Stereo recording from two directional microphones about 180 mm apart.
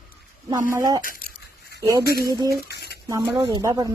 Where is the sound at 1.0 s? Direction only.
50° left (ahead or behind).